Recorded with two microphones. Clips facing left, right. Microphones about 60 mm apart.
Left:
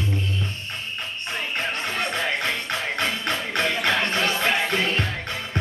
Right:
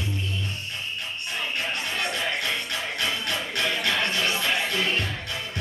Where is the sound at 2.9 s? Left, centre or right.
Left.